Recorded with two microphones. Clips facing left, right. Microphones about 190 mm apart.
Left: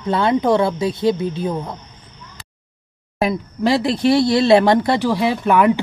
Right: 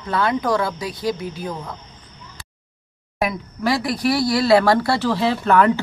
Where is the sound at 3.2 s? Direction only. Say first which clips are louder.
Left 4 dB; 25° left (ahead or behind).